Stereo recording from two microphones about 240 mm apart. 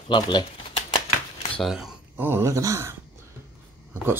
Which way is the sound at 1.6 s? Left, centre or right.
Centre.